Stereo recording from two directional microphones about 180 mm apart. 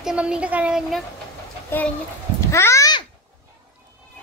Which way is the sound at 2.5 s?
15° left (ahead or behind).